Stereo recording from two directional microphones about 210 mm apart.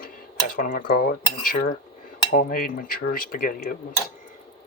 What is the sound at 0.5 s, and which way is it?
Cutlery, 40° left (ahead or behind).